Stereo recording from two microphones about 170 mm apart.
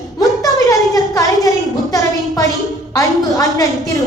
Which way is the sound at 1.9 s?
20° left (ahead or behind).